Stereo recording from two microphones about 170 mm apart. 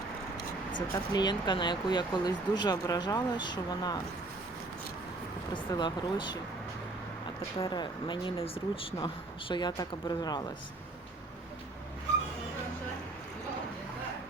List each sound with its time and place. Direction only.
0.9 s speech: 25° left (ahead or behind)
5.5 s speech: 30° left (ahead or behind)
7.6 s speech: 25° left (ahead or behind)